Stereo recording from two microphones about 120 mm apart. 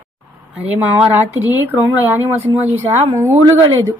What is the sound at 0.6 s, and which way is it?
A man's voice, 15° right (ahead or behind).